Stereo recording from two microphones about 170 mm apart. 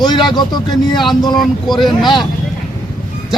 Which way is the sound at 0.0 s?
25° left (ahead or behind).